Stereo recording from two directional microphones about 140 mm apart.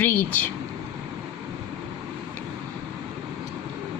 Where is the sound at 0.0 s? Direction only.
15° left (ahead or behind).